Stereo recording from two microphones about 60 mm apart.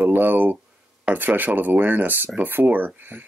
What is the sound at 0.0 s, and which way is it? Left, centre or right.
Speech, right.